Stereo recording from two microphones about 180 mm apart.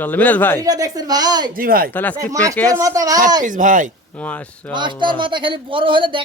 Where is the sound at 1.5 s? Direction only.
55° right (ahead or behind).